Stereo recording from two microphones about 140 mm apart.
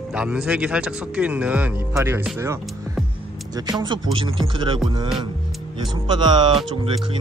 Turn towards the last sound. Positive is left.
turn(degrees=-35)  # may be behind; listen again after turning